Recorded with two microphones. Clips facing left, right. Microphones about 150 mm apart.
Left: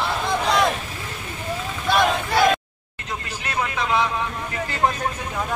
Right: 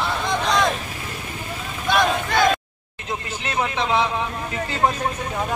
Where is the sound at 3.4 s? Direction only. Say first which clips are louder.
Right 2 dB; 25° right (ahead or behind).